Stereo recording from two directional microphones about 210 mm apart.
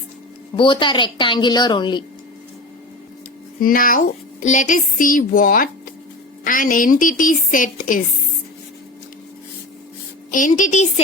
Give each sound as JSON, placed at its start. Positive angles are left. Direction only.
{"t": 0.5, "sound": "a woman's voice", "side_deg": 25}
{"t": 3.6, "sound": "speech", "side_deg": 40}
{"t": 10.3, "sound": "speech", "side_deg": 40}